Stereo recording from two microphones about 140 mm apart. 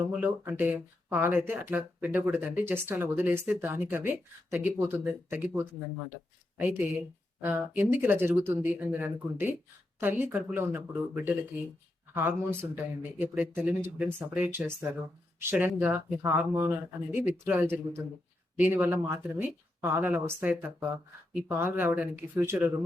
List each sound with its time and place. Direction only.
0.1 s speech: 10° right (ahead or behind)
6.7 s speech: 15° right (ahead or behind)